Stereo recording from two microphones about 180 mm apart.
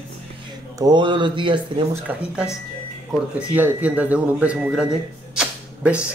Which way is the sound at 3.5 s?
10° right (ahead or behind).